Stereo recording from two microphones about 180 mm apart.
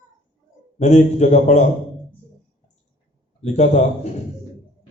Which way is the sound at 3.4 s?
40° left (ahead or behind).